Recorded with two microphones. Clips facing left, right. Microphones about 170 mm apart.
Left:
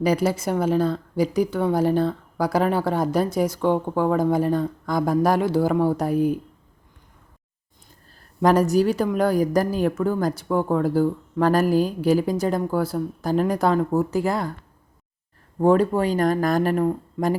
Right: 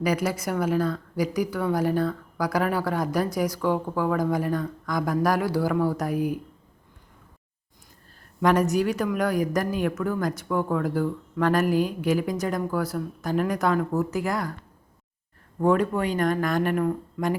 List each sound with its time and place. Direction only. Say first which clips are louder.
0.0 s a woman's voice: left 4 dB; 30° left (ahead or behind)
8.4 s a woman's voice: left 4 dB; 35° left (ahead or behind)
15.5 s a woman's voice: left 4 dB; 30° left (ahead or behind)